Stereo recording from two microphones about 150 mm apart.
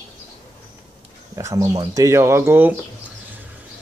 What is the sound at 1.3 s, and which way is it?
Speech, 20° right (ahead or behind).